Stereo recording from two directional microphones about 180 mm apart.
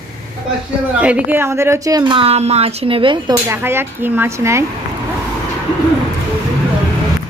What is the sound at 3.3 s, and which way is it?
Speech, 10° right (ahead or behind).